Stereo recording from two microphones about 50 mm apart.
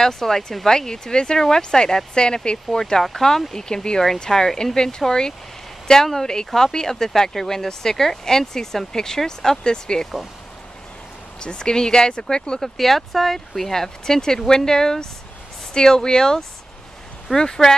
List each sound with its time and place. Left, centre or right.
0.0 s speech: centre
11.4 s speech: centre
12.6 s speech: centre